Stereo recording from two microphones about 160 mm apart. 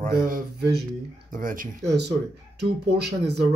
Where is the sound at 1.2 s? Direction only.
60° right (ahead or behind).